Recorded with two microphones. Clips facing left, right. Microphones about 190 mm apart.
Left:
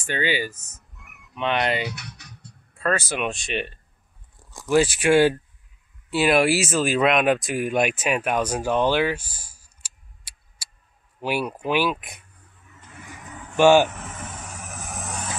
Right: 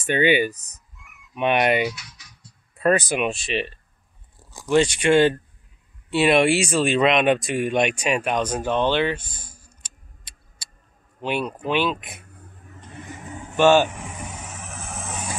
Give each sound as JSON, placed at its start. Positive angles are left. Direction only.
{"t": 0.0, "sound": "speech", "side_deg": -20}
{"t": 0.6, "sound": "speech", "side_deg": -35}
{"t": 1.3, "sound": "speech", "side_deg": -20}
{"t": 2.0, "sound": "a sound", "side_deg": 60}
{"t": 2.8, "sound": "speech", "side_deg": -15}
{"t": 12.2, "sound": "a sound", "side_deg": -45}
{"t": 12.9, "sound": "vehicle", "side_deg": -30}
{"t": 13.6, "sound": "speech", "side_deg": 15}
{"t": 13.8, "sound": "vehicle", "side_deg": -15}